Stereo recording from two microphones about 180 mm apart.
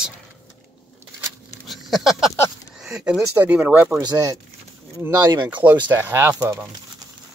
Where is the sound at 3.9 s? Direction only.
20° right (ahead or behind).